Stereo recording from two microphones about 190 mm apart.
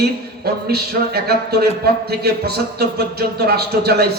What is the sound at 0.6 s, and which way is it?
A man's voice, 55° right (ahead or behind).